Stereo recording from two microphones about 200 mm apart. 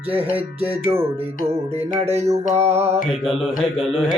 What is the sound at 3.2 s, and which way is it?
Mantra, centre (ahead or behind).